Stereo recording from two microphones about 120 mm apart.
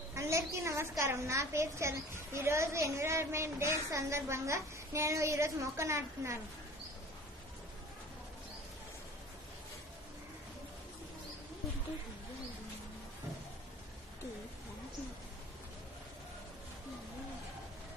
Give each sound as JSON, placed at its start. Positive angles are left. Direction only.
{"t": 0.1, "sound": "a woman's voice", "side_deg": -25}